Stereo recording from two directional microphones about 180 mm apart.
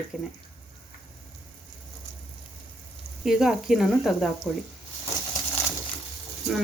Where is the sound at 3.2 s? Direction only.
Centre (ahead or behind).